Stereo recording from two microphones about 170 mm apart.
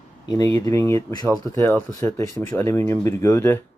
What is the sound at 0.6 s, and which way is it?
Speech, 20° left (ahead or behind).